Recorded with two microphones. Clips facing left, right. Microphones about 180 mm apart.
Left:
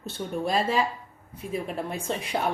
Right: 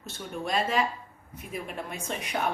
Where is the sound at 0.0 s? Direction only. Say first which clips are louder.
Left 5 dB; 30° left (ahead or behind).